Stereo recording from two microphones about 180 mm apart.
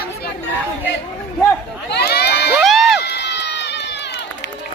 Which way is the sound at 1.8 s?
65° left (ahead or behind).